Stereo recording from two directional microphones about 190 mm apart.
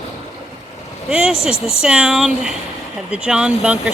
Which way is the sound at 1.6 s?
5° right (ahead or behind).